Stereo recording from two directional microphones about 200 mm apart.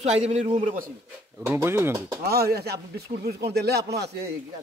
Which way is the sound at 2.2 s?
50° right (ahead or behind).